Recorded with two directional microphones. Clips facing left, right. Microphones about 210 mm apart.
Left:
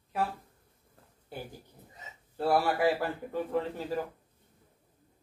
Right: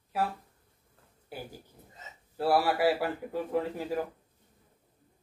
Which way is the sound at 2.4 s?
5° right (ahead or behind).